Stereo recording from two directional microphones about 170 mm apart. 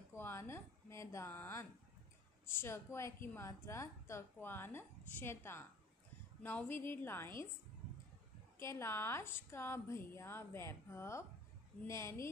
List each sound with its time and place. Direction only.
0.1 s a woman's voice: 15° left (ahead or behind)
8.5 s a woman's voice: 15° left (ahead or behind)